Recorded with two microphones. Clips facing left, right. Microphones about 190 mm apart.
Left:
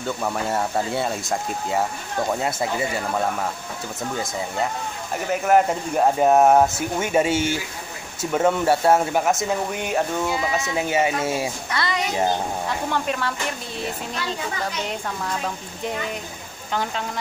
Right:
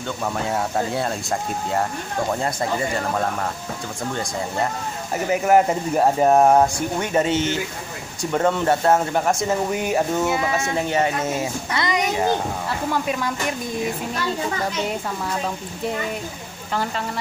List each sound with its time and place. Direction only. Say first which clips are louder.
0.0 s speech: even; 5° left (ahead or behind)
5.1 s speech: right 2 dB; 5° right (ahead or behind)
10.8 s speech: left 1 dB; 5° left (ahead or behind)
11.7 s a child's voice: right 3 dB; 20° right (ahead or behind)
12.6 s speech: right 1 dB; 5° right (ahead or behind)
16.7 s speech: right 1 dB; centre (ahead or behind)